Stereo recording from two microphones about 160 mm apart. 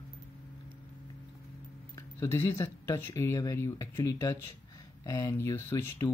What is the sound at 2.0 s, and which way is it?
Speech, 15° left (ahead or behind).